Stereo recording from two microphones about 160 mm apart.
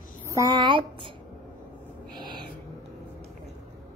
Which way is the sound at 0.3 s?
25° right (ahead or behind).